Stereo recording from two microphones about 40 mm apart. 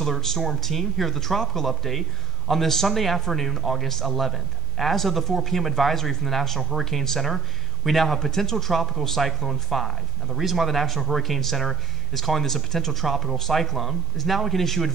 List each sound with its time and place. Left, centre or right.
0.4 s speech: centre